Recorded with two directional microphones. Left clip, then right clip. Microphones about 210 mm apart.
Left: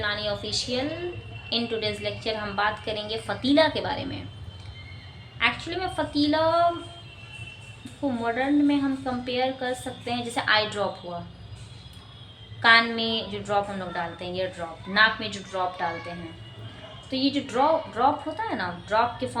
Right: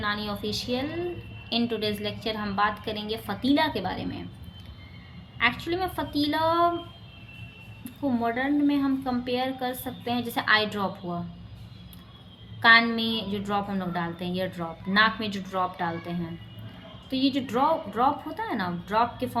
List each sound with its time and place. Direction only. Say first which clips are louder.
0.0 s a woman's voice: left 2 dB; 20° right (ahead or behind)
5.4 s a woman's voice: even; 25° right (ahead or behind)
8.2 s a woman's voice: left 2 dB; 25° right (ahead or behind)
12.6 s a woman's voice: even; 25° right (ahead or behind)
17.1 s a woman's voice: even; 25° right (ahead or behind)